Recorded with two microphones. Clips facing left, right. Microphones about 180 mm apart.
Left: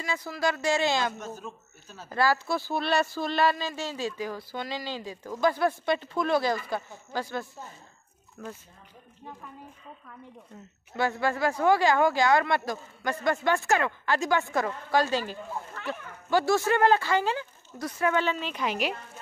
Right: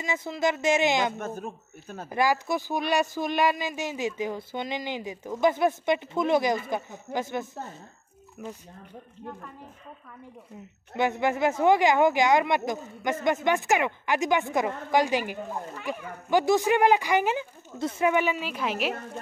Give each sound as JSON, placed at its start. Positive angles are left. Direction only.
{"t": 0.0, "sound": "speech", "side_deg": -20}
{"t": 1.1, "sound": "a man's voice", "side_deg": -55}
{"t": 2.0, "sound": "speech", "side_deg": -15}
{"t": 11.0, "sound": "speech", "side_deg": -20}